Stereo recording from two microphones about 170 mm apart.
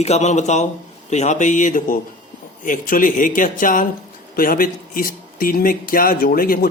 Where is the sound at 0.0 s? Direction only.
40° left (ahead or behind).